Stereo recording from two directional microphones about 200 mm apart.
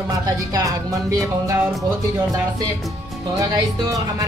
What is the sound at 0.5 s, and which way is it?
Speech, 20° right (ahead or behind).